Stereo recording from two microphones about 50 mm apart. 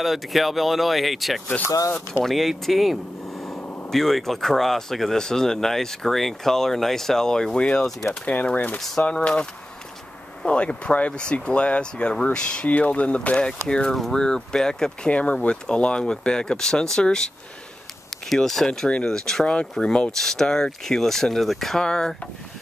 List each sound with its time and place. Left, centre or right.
0.0 s speech: centre
8.1 s speech: left
8.7 s speech: centre
15.0 s speech: left
18.3 s speech: centre